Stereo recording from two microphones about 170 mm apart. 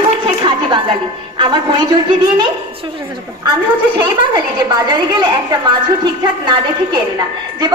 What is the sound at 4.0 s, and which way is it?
A woman's voice, 25° right (ahead or behind).